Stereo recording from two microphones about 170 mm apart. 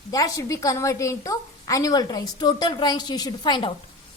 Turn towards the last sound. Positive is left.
turn(degrees=25)  # may be behind; listen again after turning